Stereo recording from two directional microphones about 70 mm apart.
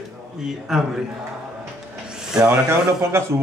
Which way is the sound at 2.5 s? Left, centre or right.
Right.